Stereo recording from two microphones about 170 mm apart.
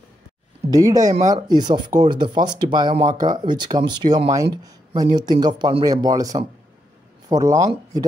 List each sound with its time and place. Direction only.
0.7 s speech: 20° right (ahead or behind)